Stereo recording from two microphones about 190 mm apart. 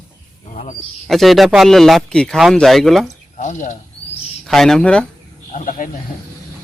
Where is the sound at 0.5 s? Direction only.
40° left (ahead or behind).